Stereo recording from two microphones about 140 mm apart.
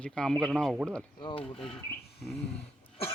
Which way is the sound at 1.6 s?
Centre (ahead or behind).